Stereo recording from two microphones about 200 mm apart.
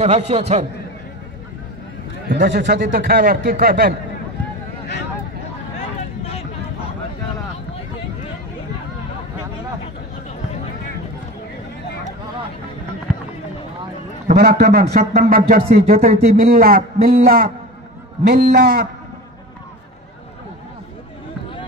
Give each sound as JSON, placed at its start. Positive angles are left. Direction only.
{"t": 0.3, "sound": "a man's voice", "side_deg": -35}
{"t": 2.3, "sound": "a man's voice", "side_deg": -60}
{"t": 14.3, "sound": "a man's voice", "side_deg": -50}